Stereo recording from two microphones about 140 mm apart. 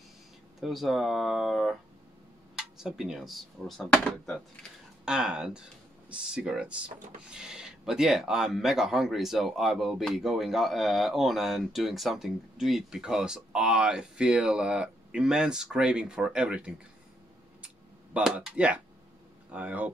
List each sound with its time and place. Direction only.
0.6 s speech: centre (ahead or behind)
18.1 s speech: 5° right (ahead or behind)